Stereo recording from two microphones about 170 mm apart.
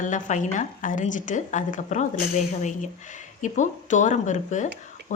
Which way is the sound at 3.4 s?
45° left (ahead or behind).